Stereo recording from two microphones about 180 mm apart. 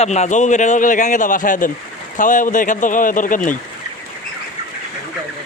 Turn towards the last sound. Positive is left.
turn(degrees=45)  # may be behind; listen again after turning